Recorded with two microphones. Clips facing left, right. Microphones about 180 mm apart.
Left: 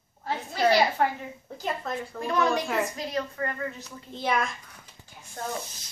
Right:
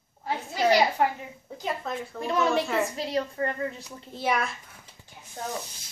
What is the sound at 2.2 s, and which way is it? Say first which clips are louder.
A woman's voice: right 1 dB; 25° right (ahead or behind).